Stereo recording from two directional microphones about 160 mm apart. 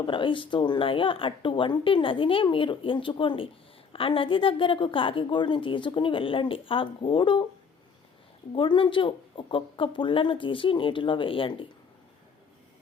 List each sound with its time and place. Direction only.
0.0 s speech: 30° left (ahead or behind)
8.5 s speech: 30° left (ahead or behind)